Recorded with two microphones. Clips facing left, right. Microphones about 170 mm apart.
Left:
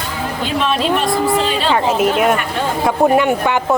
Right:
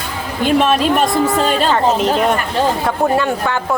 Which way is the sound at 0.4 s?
50° right (ahead or behind).